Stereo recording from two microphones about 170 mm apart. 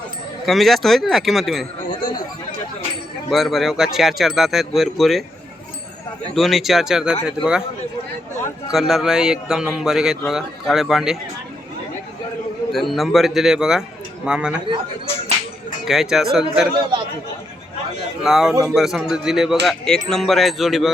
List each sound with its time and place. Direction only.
0.4 s a man's voice: centre (ahead or behind)
2.0 s chatter: 55° left (ahead or behind)
3.2 s a man's voice: centre (ahead or behind)
6.3 s a man's voice: centre (ahead or behind)
8.7 s a man's voice: centre (ahead or behind)
12.7 s a man's voice: centre (ahead or behind)
15.8 s a man's voice: centre (ahead or behind)
18.2 s a man's voice: 5° right (ahead or behind)